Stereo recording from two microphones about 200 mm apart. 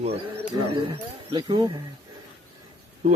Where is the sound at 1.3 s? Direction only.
20° right (ahead or behind).